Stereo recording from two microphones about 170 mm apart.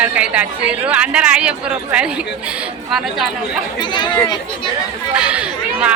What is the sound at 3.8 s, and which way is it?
Speech, 25° left (ahead or behind).